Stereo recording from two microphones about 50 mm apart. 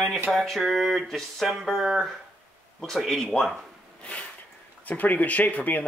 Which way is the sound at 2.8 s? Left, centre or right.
Centre.